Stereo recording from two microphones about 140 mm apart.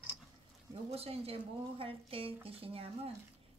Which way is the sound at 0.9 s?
45° right (ahead or behind).